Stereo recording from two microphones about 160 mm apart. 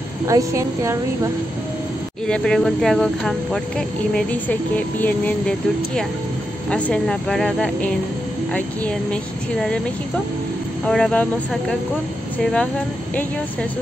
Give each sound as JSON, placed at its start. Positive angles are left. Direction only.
{"t": 0.3, "sound": "a woman's voice", "side_deg": -20}
{"t": 2.2, "sound": "speech", "side_deg": 5}
{"t": 6.7, "sound": "speech", "side_deg": 5}
{"t": 10.9, "sound": "speech", "side_deg": 5}